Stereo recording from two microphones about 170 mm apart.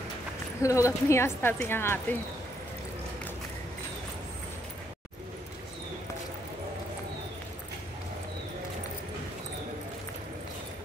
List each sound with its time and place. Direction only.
0.6 s a woman's voice: 20° left (ahead or behind)